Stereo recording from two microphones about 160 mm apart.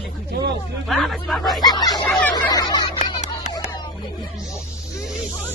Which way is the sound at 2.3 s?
25° left (ahead or behind).